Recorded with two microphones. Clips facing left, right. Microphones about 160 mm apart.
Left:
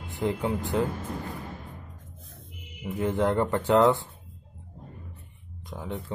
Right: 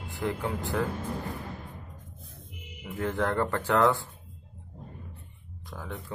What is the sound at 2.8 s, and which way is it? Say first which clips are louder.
A man's voice: left 4 dB; 20° left (ahead or behind).